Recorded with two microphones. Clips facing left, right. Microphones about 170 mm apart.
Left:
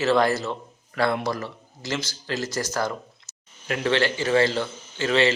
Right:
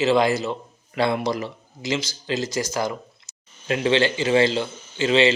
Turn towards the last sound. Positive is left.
turn(degrees=-20)  # may be behind; listen again after turning